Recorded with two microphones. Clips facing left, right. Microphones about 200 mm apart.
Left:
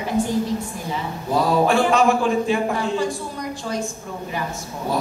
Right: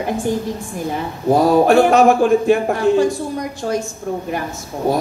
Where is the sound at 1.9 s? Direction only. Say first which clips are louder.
Right 6 dB; 45° right (ahead or behind).